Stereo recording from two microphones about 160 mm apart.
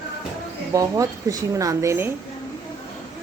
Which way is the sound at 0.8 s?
20° right (ahead or behind).